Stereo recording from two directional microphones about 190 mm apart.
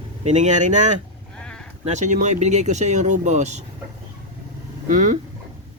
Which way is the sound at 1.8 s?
40° right (ahead or behind).